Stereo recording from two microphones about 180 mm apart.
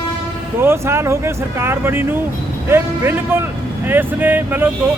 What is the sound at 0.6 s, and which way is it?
Speech, 15° right (ahead or behind).